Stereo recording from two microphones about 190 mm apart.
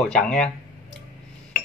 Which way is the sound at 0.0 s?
5° left (ahead or behind).